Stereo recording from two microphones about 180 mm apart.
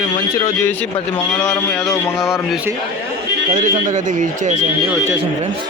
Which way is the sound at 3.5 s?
45° right (ahead or behind).